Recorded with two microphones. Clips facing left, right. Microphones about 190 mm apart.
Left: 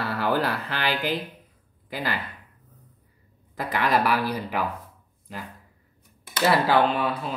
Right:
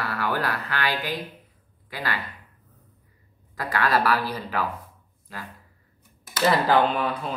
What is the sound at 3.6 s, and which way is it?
Speech, 20° left (ahead or behind).